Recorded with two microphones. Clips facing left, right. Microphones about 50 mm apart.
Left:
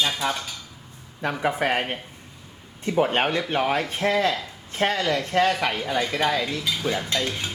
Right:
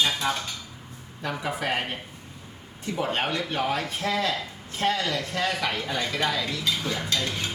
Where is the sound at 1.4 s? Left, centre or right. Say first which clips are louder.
Left 5 dB; left.